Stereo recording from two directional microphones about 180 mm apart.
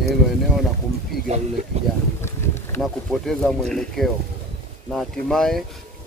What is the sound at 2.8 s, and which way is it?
Speech, centre (ahead or behind).